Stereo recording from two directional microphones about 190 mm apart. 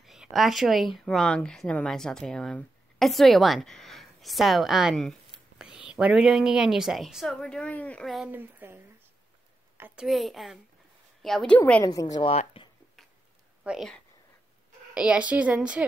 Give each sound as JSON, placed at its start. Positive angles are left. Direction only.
{"t": 0.0, "sound": "a woman's voice", "side_deg": 0}
{"t": 11.8, "sound": "a woman's voice", "side_deg": 20}
{"t": 12.3, "sound": "speech", "side_deg": 30}
{"t": 13.7, "sound": "a woman's voice", "side_deg": 0}